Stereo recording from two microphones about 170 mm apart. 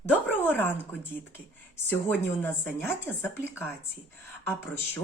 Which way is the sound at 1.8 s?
10° left (ahead or behind).